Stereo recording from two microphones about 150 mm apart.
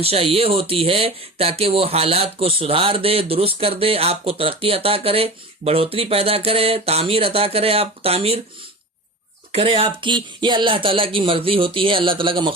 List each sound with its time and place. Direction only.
0.0 s speech: 40° right (ahead or behind)
9.5 s speech: 40° right (ahead or behind)